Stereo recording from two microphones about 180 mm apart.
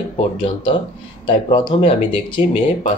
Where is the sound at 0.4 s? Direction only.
30° left (ahead or behind).